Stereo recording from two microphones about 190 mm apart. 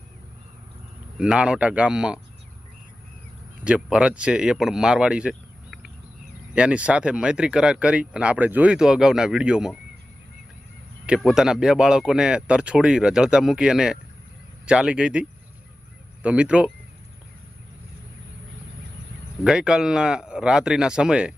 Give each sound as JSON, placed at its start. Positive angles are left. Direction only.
{"t": 1.2, "sound": "speech", "side_deg": -5}
{"t": 3.6, "sound": "speech", "side_deg": -5}
{"t": 11.0, "sound": "speech", "side_deg": -5}
{"t": 19.5, "sound": "speech", "side_deg": -5}